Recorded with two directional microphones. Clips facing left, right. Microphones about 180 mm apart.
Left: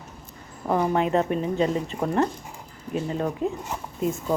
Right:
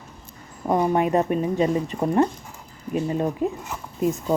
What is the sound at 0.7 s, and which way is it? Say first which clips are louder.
Speech: right 2 dB; 15° right (ahead or behind).